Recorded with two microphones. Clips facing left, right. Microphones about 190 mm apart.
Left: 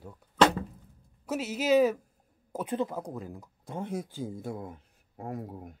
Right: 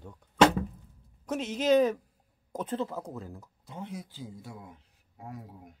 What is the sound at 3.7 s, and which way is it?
Speech, 50° left (ahead or behind).